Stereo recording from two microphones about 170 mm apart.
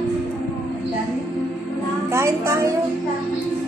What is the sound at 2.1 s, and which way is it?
Speech, 15° right (ahead or behind).